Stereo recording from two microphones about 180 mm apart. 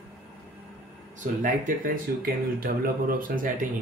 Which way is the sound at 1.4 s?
50° right (ahead or behind).